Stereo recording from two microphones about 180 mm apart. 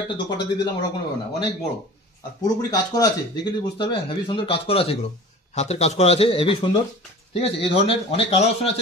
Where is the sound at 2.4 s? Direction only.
20° left (ahead or behind).